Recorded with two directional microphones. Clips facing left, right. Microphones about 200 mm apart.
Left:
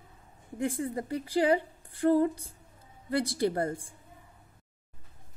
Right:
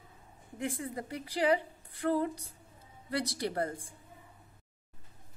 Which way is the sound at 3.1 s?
25° left (ahead or behind).